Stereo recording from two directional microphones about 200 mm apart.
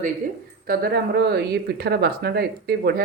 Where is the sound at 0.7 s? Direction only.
50° right (ahead or behind).